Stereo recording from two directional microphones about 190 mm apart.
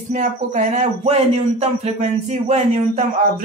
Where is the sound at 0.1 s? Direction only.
40° right (ahead or behind).